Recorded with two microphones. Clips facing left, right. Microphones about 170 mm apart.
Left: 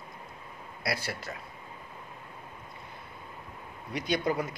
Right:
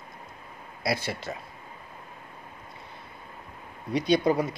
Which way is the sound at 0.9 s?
25° right (ahead or behind).